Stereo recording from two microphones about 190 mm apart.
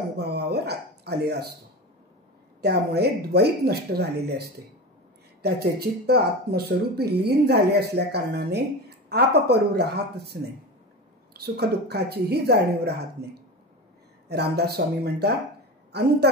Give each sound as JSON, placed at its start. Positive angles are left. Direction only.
{"t": 0.2, "sound": "a sound", "side_deg": -60}
{"t": 2.6, "sound": "speech", "side_deg": -60}
{"t": 5.4, "sound": "speech", "side_deg": -55}